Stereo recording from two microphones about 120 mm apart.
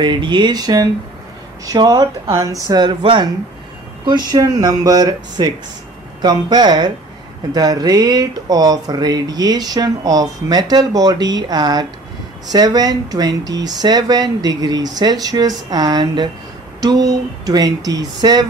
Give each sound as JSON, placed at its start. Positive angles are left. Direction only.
{"t": 0.0, "sound": "speech", "side_deg": -40}